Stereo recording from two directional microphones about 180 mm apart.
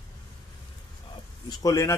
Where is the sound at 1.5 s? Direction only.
20° left (ahead or behind).